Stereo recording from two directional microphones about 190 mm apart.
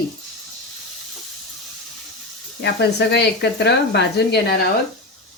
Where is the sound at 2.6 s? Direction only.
60° left (ahead or behind).